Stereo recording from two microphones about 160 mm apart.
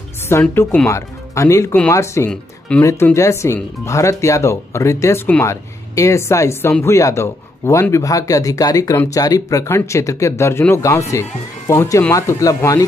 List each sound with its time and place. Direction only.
0.3 s speech: 15° left (ahead or behind)